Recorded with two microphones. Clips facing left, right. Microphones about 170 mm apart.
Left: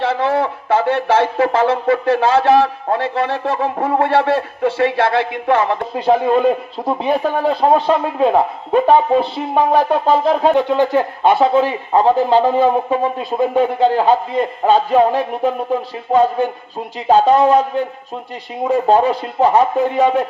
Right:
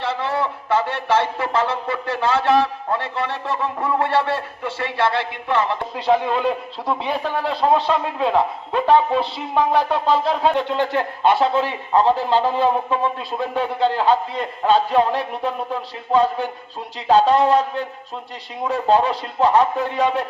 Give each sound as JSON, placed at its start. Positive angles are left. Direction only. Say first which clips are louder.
{"t": 0.0, "sound": "speech", "louder": "left 6 dB", "side_deg": 55}
{"t": 17.1, "sound": "speech", "louder": "left 3 dB", "side_deg": 50}
{"t": 17.5, "sound": "a man's voice", "louder": "left 4 dB", "side_deg": 10}
{"t": 18.7, "sound": "speech", "louder": "left 4 dB", "side_deg": 50}